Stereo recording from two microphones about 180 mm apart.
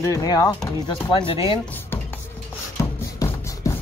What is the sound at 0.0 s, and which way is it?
Speech, 20° left (ahead or behind).